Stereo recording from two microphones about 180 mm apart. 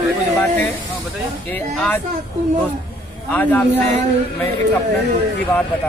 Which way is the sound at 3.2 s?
10° left (ahead or behind).